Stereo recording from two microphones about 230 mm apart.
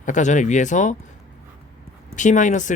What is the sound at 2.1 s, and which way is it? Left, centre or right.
Speech, left.